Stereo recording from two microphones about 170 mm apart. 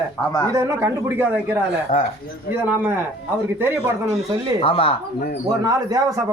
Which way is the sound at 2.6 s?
10° right (ahead or behind).